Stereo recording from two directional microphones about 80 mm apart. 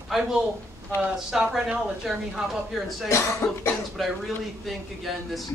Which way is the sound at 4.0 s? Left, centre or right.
Centre.